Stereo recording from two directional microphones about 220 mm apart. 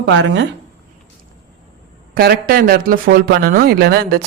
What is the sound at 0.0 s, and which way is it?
Speech, 55° right (ahead or behind).